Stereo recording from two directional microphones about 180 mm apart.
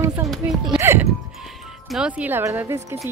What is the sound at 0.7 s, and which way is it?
A woman's voice, 15° right (ahead or behind).